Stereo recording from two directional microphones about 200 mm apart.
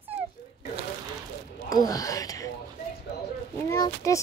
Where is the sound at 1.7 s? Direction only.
15° left (ahead or behind).